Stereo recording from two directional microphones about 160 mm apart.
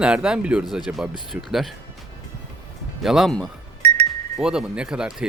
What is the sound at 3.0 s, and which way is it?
Speech, centre (ahead or behind).